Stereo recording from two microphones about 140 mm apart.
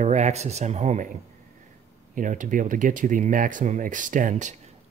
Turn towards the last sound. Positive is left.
turn(degrees=-60)  # may be behind; listen again after turning